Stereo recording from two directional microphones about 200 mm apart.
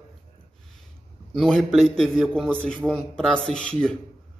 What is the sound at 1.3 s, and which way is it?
A man's voice, centre (ahead or behind).